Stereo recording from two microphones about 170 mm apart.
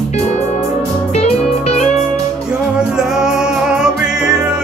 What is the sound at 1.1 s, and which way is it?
Music, 40° left (ahead or behind).